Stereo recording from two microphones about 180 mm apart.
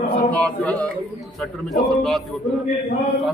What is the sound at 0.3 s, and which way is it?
A man's voice, 10° left (ahead or behind).